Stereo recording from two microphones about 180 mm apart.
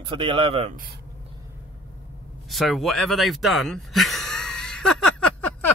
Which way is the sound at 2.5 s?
Centre (ahead or behind).